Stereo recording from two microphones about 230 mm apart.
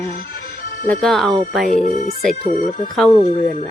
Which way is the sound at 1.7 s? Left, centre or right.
Left.